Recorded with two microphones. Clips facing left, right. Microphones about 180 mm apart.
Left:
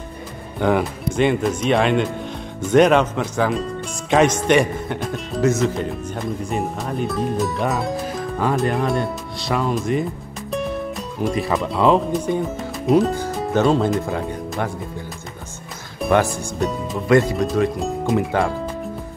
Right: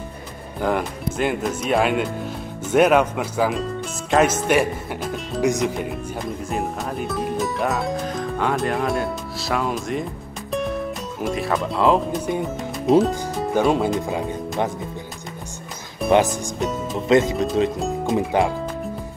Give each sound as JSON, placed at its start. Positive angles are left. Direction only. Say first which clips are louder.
{"t": 0.6, "sound": "speech", "louder": "left 3 dB", "side_deg": 0}
{"t": 5.4, "sound": "speech", "louder": "left 2 dB", "side_deg": -15}
{"t": 6.1, "sound": "speech", "louder": "left 2 dB", "side_deg": 0}
{"t": 10.5, "sound": "music", "louder": "even", "side_deg": 0}
{"t": 12.3, "sound": "speech", "louder": "left 2 dB", "side_deg": 0}
{"t": 13.3, "sound": "music", "louder": "left 1 dB", "side_deg": 0}
{"t": 13.6, "sound": "speech", "louder": "left 2 dB", "side_deg": -10}
{"t": 16.1, "sound": "speech", "louder": "right 1 dB", "side_deg": -20}
{"t": 16.5, "sound": "speech", "louder": "left 3 dB", "side_deg": 0}
{"t": 17.1, "sound": "speech", "louder": "left 1 dB", "side_deg": -20}
{"t": 17.7, "sound": "speech", "louder": "left 1 dB", "side_deg": 0}
{"t": 18.1, "sound": "speech", "louder": "even", "side_deg": -20}